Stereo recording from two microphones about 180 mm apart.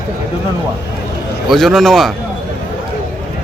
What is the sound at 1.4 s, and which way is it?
Speech, centre (ahead or behind).